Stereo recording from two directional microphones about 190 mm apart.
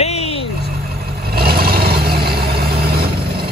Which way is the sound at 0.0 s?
35° left (ahead or behind).